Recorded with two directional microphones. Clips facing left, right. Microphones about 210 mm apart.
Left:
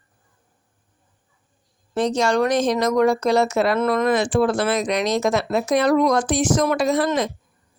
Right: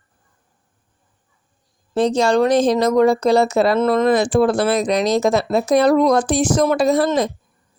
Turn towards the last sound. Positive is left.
turn(degrees=-35)  # may be behind; listen again after turning